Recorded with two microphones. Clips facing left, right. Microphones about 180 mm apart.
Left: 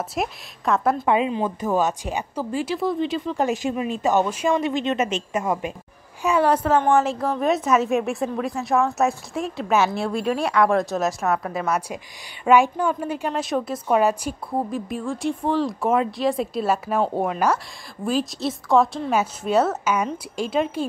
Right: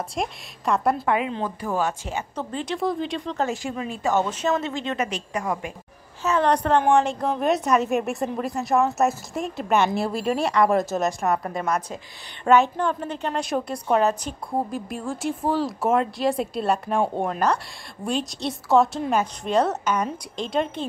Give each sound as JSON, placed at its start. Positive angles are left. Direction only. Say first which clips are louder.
{"t": 0.1, "sound": "a woman's voice", "louder": "left 2 dB", "side_deg": 0}
{"t": 1.0, "sound": "speech", "louder": "left 3 dB", "side_deg": 25}
{"t": 3.3, "sound": "speech", "louder": "left 4 dB", "side_deg": 20}
{"t": 6.2, "sound": "a woman's voice", "louder": "left 2 dB", "side_deg": 10}